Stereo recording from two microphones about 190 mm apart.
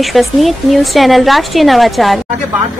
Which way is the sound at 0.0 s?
Centre (ahead or behind).